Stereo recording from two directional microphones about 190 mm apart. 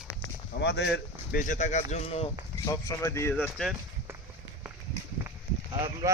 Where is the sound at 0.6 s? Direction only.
65° left (ahead or behind).